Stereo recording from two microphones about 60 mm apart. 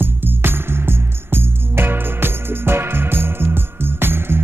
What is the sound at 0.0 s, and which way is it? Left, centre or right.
Music, right.